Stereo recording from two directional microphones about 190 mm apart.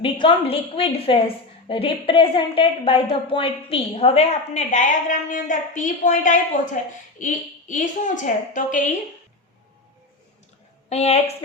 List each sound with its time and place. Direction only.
0.0 s a woman's voice: 30° left (ahead or behind)
10.8 s a woman's voice: 35° left (ahead or behind)